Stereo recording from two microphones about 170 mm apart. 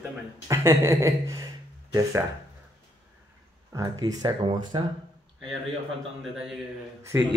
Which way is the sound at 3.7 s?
20° right (ahead or behind).